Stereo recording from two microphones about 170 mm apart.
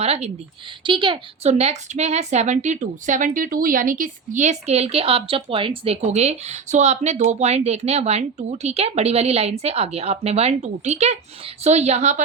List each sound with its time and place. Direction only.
0.0 s a woman's voice: 40° right (ahead or behind)